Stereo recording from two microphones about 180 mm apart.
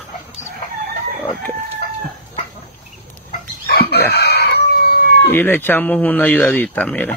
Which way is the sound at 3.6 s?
60° left (ahead or behind).